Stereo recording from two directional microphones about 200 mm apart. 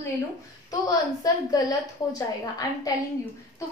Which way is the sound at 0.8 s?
20° left (ahead or behind).